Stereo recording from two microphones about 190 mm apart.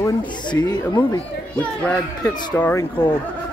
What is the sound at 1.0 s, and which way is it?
Speech, 10° left (ahead or behind).